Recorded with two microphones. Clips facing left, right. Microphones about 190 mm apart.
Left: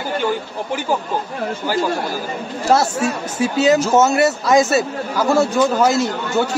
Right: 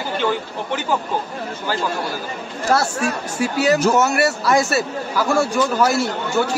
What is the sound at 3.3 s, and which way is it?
A man's voice, 20° left (ahead or behind).